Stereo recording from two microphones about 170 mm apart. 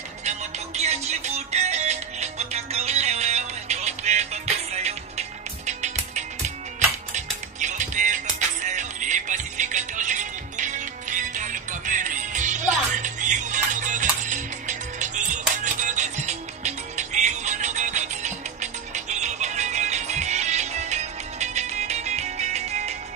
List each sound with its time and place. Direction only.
0.2 s music: 40° right (ahead or behind)